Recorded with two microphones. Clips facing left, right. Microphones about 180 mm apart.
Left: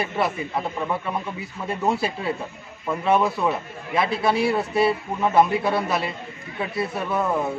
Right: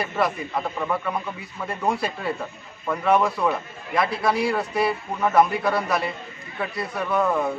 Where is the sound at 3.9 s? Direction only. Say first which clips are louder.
Left 1 dB; 25° left (ahead or behind).